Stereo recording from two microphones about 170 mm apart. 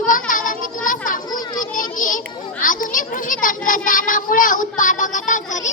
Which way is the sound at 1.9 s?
50° left (ahead or behind).